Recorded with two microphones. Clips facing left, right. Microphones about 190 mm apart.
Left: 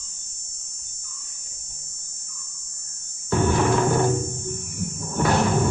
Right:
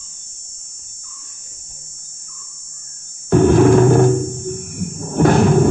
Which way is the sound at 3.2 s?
50° right (ahead or behind).